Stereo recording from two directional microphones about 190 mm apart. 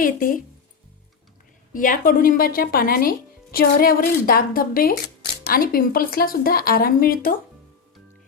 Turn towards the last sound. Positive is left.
turn(degrees=50)  # may be behind; listen again after turning